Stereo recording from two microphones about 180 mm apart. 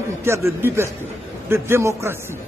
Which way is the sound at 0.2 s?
15° right (ahead or behind).